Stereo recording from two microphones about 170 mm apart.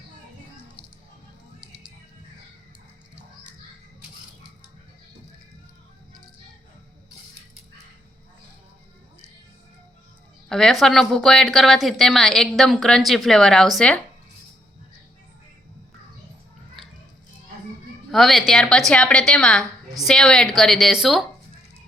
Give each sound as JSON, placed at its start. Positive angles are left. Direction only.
{"t": 10.5, "sound": "a woman's voice", "side_deg": 0}
{"t": 18.1, "sound": "a woman's voice", "side_deg": 0}
{"t": 19.6, "sound": "a sound", "side_deg": -20}
{"t": 20.1, "sound": "a woman's voice", "side_deg": 5}